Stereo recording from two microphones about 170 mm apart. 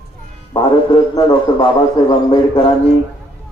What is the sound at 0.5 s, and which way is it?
A man's voice, 30° left (ahead or behind).